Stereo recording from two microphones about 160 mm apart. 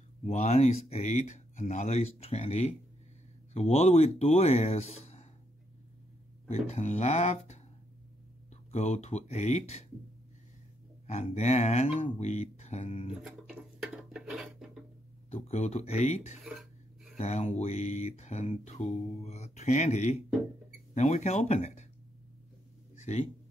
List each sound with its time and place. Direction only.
0.2 s speech: 45° left (ahead or behind)
6.5 s speech: 45° left (ahead or behind)
8.7 s speech: 45° left (ahead or behind)
11.1 s speech: 45° left (ahead or behind)
13.2 s dishes: 5° right (ahead or behind)
15.3 s speech: 45° left (ahead or behind)
16.4 s a sound: centre (ahead or behind)
17.2 s speech: 40° left (ahead or behind)
23.1 s speech: 40° left (ahead or behind)